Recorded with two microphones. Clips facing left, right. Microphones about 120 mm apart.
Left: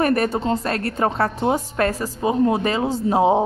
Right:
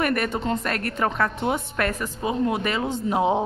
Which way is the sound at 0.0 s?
35° left (ahead or behind).